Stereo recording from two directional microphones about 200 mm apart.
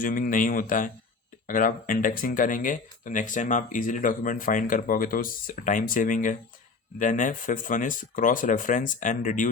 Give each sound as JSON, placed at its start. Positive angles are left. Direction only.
{"t": 0.0, "sound": "speech", "side_deg": 40}